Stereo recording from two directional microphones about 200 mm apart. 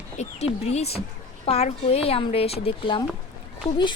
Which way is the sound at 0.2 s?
30° left (ahead or behind).